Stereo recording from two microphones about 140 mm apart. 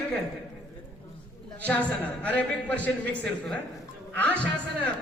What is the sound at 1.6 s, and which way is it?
A woman's voice, 10° left (ahead or behind).